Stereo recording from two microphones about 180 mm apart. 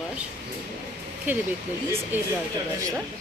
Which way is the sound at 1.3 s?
10° right (ahead or behind).